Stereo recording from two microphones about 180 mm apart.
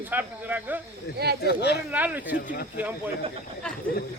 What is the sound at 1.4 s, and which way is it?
Speech, 65° left (ahead or behind).